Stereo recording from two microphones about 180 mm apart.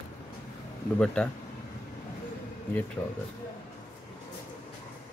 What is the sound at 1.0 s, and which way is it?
Speech, 5° left (ahead or behind).